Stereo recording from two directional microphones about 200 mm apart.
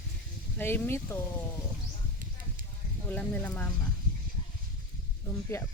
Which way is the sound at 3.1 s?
10° left (ahead or behind).